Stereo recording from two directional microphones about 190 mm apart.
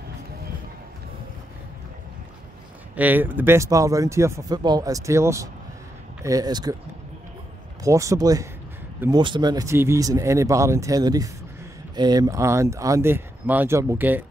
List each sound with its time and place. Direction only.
3.0 s speech: 10° right (ahead or behind)
7.8 s speech: 15° right (ahead or behind)